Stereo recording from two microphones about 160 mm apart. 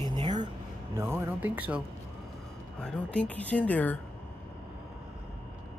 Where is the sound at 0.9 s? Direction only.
15° right (ahead or behind).